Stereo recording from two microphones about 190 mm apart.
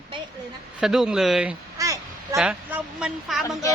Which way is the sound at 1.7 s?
15° right (ahead or behind).